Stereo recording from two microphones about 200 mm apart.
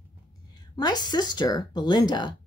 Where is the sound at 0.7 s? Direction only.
20° left (ahead or behind).